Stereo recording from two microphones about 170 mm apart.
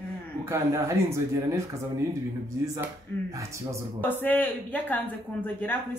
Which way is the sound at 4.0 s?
10° left (ahead or behind).